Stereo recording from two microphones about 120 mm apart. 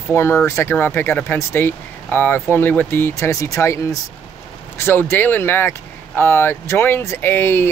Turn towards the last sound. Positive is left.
turn(degrees=20)  # may be behind; listen again after turning